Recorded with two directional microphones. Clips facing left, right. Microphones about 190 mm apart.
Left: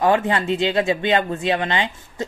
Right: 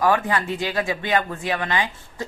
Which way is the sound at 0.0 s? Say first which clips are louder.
Left 2 dB; 25° left (ahead or behind).